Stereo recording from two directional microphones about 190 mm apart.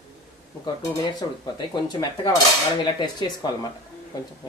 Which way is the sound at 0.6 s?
20° left (ahead or behind).